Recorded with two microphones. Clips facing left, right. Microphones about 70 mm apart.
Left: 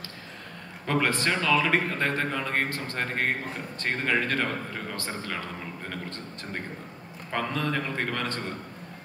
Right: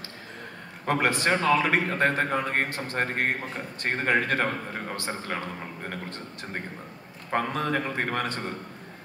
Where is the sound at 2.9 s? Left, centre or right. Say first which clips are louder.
Right 2 dB; right.